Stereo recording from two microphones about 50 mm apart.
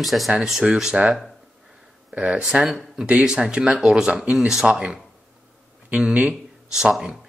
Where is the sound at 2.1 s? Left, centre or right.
Right.